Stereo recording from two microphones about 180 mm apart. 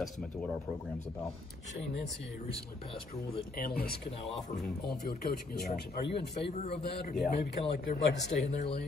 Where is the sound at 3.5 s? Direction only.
55° left (ahead or behind).